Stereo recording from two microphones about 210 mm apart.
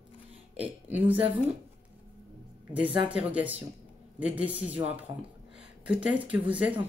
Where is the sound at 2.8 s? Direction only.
25° right (ahead or behind).